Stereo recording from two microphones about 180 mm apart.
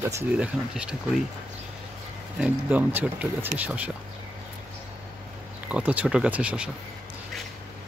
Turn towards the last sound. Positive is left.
turn(degrees=-5)  # may be behind; listen again after turning